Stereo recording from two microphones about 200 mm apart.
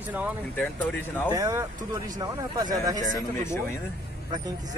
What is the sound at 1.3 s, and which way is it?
Speech, 15° right (ahead or behind).